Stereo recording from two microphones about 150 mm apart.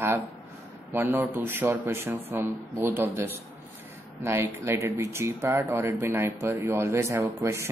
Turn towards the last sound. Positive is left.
turn(degrees=-20)  # may be behind; listen again after turning